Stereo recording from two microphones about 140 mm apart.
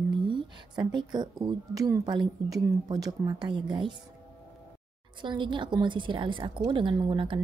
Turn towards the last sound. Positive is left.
turn(degrees=-35)  # may be behind; listen again after turning